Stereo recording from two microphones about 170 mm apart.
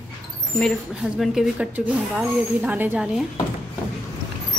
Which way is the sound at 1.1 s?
Centre (ahead or behind).